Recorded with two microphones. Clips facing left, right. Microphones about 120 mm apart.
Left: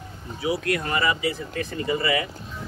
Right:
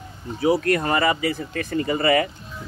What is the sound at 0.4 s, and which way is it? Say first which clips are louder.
Speech: right 6 dB; 45° right (ahead or behind).